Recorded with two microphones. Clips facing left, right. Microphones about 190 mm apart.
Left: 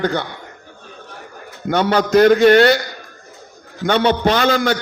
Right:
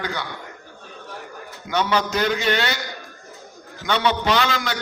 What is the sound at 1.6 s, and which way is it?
A man's voice, 50° left (ahead or behind).